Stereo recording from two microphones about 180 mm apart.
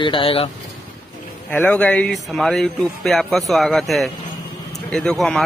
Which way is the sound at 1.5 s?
10° left (ahead or behind).